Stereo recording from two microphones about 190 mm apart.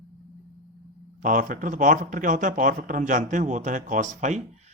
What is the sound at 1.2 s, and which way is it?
Speech, 45° right (ahead or behind).